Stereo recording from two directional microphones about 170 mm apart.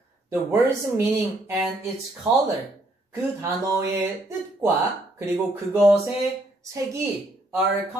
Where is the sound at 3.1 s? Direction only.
15° right (ahead or behind).